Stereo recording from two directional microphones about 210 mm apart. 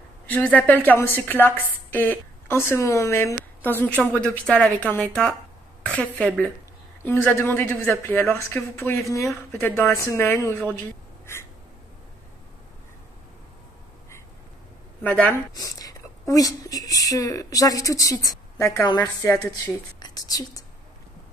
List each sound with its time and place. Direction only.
0.3 s a woman's voice: 5° left (ahead or behind)
11.3 s crow: 10° left (ahead or behind)
15.0 s a woman's voice: 10° left (ahead or behind)